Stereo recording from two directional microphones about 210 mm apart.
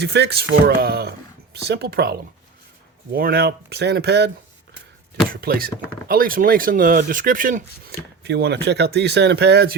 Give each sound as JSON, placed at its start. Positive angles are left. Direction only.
{"t": 0.0, "sound": "speech", "side_deg": -50}
{"t": 5.3, "sound": "speech", "side_deg": -45}